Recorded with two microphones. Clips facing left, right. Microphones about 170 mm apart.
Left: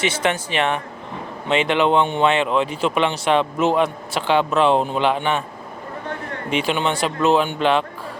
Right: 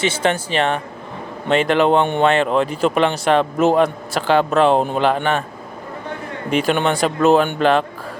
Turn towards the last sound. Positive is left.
turn(degrees=-45)  # may be behind; listen again after turning